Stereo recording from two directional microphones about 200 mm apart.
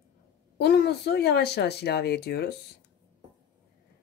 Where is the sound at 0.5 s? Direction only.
55° left (ahead or behind).